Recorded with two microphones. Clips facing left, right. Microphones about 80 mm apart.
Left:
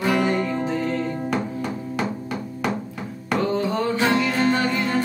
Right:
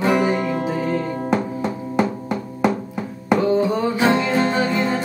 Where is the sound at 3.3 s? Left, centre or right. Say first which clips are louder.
Right 5 dB; centre.